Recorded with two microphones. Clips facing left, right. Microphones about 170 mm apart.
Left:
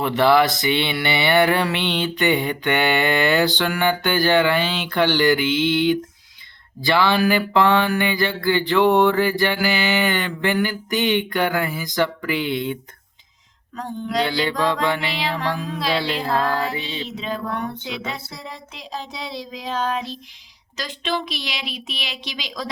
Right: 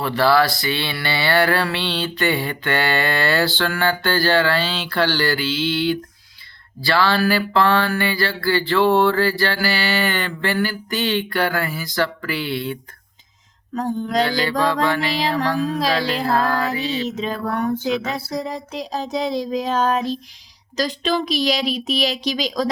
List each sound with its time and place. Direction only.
0.0 s speech: 20° left (ahead or behind)
13.7 s a sound: 45° right (ahead or behind)
14.6 s music: 20° left (ahead or behind)
15.1 s speech: 40° right (ahead or behind)
15.5 s music: 20° left (ahead or behind)
15.8 s speech: 40° right (ahead or behind)
16.6 s a sound: 40° right (ahead or behind)
20.7 s speech: 40° right (ahead or behind)